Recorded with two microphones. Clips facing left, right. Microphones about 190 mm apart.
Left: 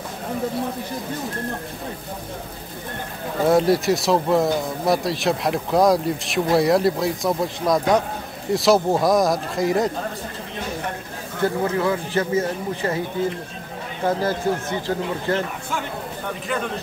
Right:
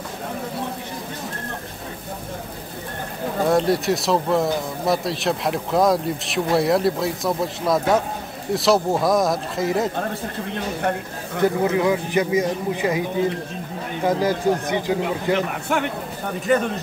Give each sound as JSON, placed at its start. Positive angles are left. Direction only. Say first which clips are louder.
{"t": 3.4, "sound": "speech", "louder": "left 2 dB", "side_deg": 0}
{"t": 11.4, "sound": "speech", "louder": "right 2 dB", "side_deg": -15}
{"t": 14.0, "sound": "speech", "louder": "right 2 dB", "side_deg": -15}
{"t": 15.7, "sound": "speech", "louder": "right 7 dB", "side_deg": -65}